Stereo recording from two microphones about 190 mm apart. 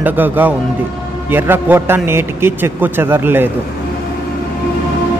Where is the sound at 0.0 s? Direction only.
10° right (ahead or behind).